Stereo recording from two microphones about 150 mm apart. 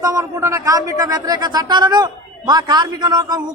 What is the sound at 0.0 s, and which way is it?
A man's voice, 20° right (ahead or behind).